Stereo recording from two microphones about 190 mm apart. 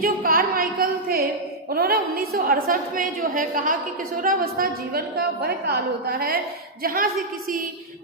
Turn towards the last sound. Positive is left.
turn(degrees=-45)  # may be behind; listen again after turning